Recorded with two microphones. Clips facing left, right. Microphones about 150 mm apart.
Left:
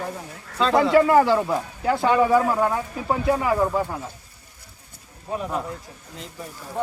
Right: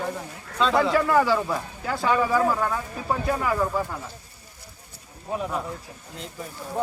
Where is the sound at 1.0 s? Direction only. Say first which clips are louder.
Left 3 dB; 15° left (ahead or behind).